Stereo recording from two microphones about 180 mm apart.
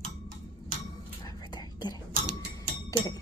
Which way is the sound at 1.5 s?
25° left (ahead or behind).